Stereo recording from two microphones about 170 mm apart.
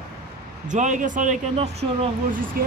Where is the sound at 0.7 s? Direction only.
45° right (ahead or behind).